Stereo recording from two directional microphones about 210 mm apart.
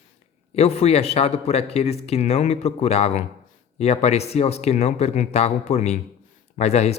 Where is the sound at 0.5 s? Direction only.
30° left (ahead or behind).